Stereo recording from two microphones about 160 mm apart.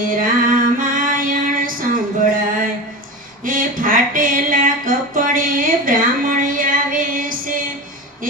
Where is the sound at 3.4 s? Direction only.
60° right (ahead or behind).